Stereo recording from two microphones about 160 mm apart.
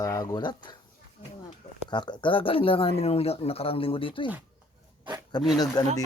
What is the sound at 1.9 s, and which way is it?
Speech, 30° left (ahead or behind).